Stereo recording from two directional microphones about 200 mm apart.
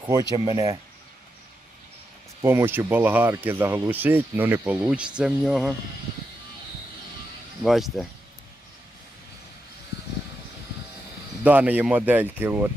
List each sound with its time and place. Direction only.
0.0 s speech: 20° right (ahead or behind)
2.4 s speech: 15° right (ahead or behind)
7.6 s speech: centre (ahead or behind)
11.4 s speech: 10° right (ahead or behind)